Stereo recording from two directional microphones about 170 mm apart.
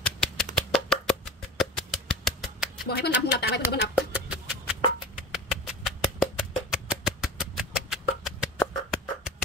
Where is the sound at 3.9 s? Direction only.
5° right (ahead or behind).